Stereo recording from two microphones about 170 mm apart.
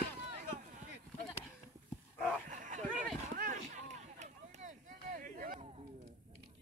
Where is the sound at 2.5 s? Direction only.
50° right (ahead or behind).